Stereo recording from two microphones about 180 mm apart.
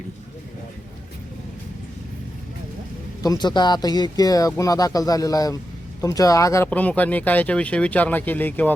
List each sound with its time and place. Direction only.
3.2 s speech: 25° left (ahead or behind)